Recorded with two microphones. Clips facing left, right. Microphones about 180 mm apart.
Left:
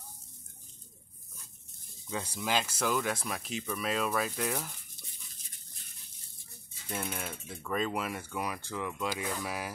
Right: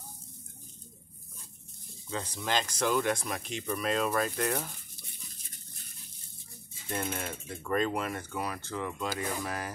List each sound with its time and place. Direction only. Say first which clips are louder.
2.0 s speech: even; 10° left (ahead or behind)
6.9 s speech: right 3 dB; centre (ahead or behind)